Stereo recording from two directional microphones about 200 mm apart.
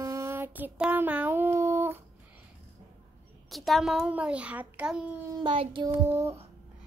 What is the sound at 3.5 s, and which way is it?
A child's voice, centre (ahead or behind).